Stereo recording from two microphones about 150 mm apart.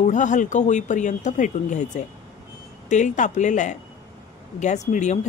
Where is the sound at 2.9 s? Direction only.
55° left (ahead or behind).